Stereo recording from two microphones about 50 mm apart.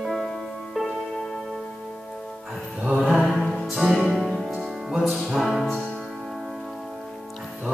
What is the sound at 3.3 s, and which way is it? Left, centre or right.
Music, centre.